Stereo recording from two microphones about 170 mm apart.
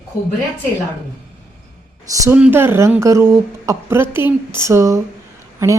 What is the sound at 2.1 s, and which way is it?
A woman's voice, 20° right (ahead or behind).